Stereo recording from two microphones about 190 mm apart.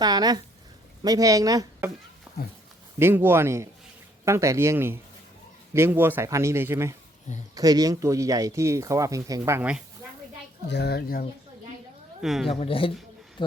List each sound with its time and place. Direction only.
0.0 s speech: 20° right (ahead or behind)
2.3 s cat: 5° right (ahead or behind)
3.0 s speech: 10° right (ahead or behind)
10.7 s speech: 60° left (ahead or behind)
12.2 s a woman's voice: centre (ahead or behind)
12.5 s speech: 30° left (ahead or behind)